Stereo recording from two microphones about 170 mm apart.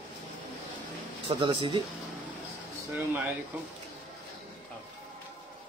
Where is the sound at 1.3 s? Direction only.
25° right (ahead or behind).